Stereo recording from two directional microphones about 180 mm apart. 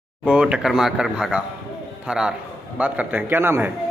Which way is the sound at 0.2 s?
5° right (ahead or behind).